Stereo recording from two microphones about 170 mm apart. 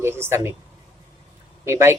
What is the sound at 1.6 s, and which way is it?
Speech, 15° right (ahead or behind).